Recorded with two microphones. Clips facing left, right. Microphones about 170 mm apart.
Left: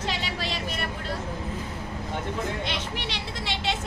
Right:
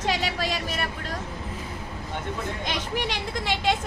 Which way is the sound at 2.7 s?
45° right (ahead or behind).